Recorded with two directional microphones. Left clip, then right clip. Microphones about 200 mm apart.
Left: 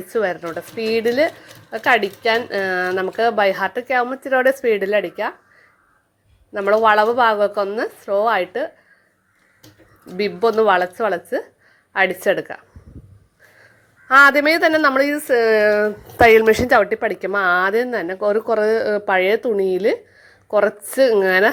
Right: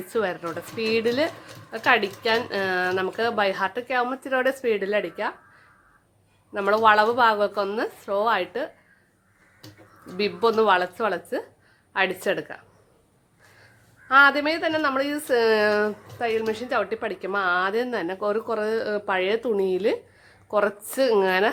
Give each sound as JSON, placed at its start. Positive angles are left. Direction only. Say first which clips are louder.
{"t": 0.1, "sound": "speech", "louder": "left 5 dB", "side_deg": 10}
{"t": 6.5, "sound": "speech", "louder": "left 4 dB", "side_deg": 15}
{"t": 10.2, "sound": "speech", "louder": "left 4 dB", "side_deg": 15}
{"t": 14.1, "sound": "a woman's voice", "louder": "left 6 dB", "side_deg": 25}
{"t": 15.1, "sound": "speech", "louder": "left 5 dB", "side_deg": 10}
{"t": 16.1, "sound": "a woman's voice", "louder": "left 17 dB", "side_deg": 45}
{"t": 16.8, "sound": "a woman's voice", "louder": "left 8 dB", "side_deg": 20}